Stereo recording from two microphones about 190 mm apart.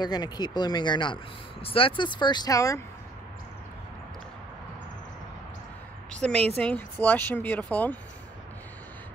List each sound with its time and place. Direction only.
0.0 s speech: 20° left (ahead or behind)
6.2 s speech: 5° left (ahead or behind)